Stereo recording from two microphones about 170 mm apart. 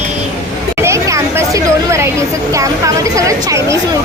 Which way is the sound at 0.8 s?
15° right (ahead or behind).